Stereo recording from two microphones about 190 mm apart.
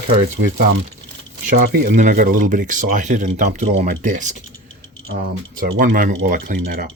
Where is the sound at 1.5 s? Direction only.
55° right (ahead or behind).